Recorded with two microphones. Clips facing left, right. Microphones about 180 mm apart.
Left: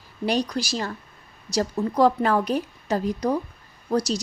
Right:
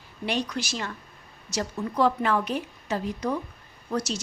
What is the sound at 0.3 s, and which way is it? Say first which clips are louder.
A woman's voice: left 5 dB; 35° left (ahead or behind).